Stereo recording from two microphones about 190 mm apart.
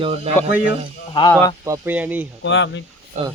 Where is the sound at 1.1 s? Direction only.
20° left (ahead or behind).